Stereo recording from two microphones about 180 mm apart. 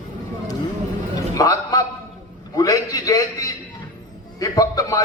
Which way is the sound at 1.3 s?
20° left (ahead or behind).